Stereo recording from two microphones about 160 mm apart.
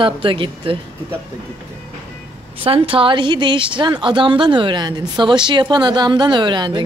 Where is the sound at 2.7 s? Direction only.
35° right (ahead or behind).